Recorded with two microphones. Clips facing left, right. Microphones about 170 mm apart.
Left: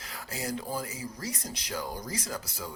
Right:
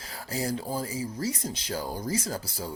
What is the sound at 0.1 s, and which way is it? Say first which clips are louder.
Speech: right 4 dB; 35° right (ahead or behind).